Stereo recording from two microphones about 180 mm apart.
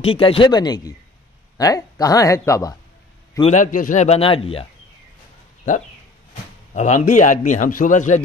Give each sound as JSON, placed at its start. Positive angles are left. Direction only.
{"t": 0.0, "sound": "speech", "side_deg": 30}
{"t": 3.5, "sound": "a man's voice", "side_deg": 45}
{"t": 6.7, "sound": "a man's voice", "side_deg": 40}